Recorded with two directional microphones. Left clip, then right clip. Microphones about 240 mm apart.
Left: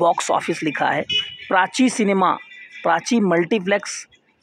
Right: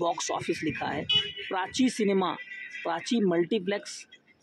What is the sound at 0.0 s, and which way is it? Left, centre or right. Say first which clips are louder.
A man's voice: left 11 dB; left.